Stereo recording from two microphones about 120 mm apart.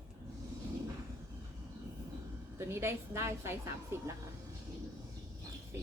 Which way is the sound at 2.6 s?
20° right (ahead or behind).